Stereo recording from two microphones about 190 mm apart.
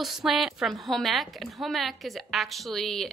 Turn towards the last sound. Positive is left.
turn(degrees=0)  # may be behind; listen again after turning